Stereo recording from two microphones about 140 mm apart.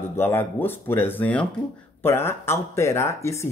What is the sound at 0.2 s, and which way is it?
Speech, 15° left (ahead or behind).